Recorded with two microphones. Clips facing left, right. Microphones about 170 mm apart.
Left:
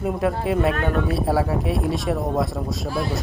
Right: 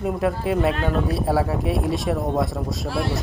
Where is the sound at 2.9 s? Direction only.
75° right (ahead or behind).